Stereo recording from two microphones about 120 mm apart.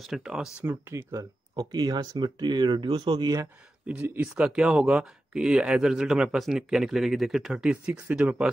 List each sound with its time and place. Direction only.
0.0 s speech: 5° right (ahead or behind)
0.7 s speech: 20° right (ahead or behind); by 3.2 s 45° right (ahead or behind)
3.2 s speech: 30° right (ahead or behind)
3.8 s speech: 10° right (ahead or behind)